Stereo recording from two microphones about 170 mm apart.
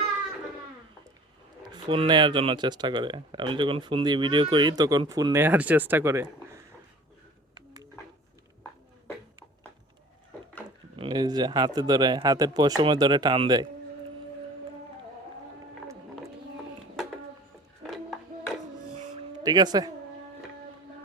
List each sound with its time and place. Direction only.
1.6 s speech: 30° right (ahead or behind)
10.9 s speech: 30° right (ahead or behind)
17.8 s music: centre (ahead or behind)
19.4 s speech: 25° right (ahead or behind)